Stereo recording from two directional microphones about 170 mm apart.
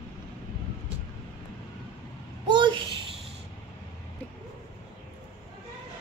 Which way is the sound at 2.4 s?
25° right (ahead or behind).